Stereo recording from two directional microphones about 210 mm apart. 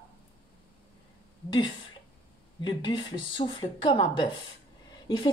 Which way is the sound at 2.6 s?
20° left (ahead or behind).